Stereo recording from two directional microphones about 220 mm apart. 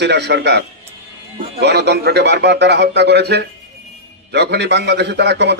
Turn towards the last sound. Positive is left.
turn(degrees=-50)  # may be behind; listen again after turning